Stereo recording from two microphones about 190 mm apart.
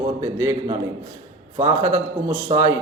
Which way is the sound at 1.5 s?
35° right (ahead or behind).